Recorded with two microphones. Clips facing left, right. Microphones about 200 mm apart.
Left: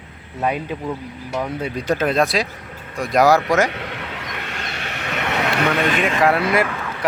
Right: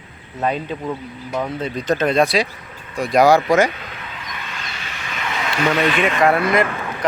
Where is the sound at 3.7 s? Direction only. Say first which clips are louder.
Left 5 dB; 75° left (ahead or behind); by 6.0 s 50° left (ahead or behind).